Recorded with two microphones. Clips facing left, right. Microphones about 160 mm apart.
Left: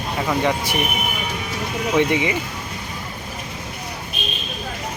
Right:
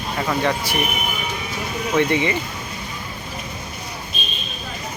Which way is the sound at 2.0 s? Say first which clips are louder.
Right 1 dB; 15° left (ahead or behind).